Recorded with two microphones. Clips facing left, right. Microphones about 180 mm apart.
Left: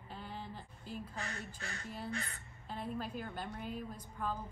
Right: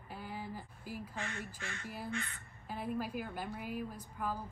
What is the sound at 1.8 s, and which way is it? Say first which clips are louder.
Speech: even; 10° right (ahead or behind).